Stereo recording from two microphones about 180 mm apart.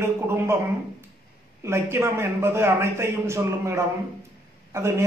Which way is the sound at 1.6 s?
15° right (ahead or behind).